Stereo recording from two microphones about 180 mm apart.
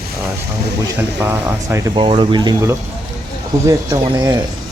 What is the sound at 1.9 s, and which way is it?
Speech, 30° right (ahead or behind).